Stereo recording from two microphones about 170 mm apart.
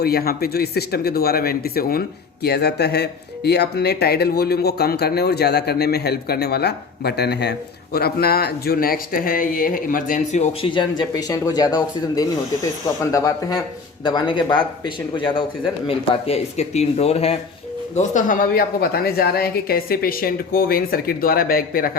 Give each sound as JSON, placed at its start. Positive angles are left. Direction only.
{"t": 0.0, "sound": "speech", "side_deg": 65}
{"t": 7.9, "sound": "speech", "side_deg": 65}
{"t": 10.7, "sound": "speech", "side_deg": 25}
{"t": 17.9, "sound": "speech", "side_deg": 50}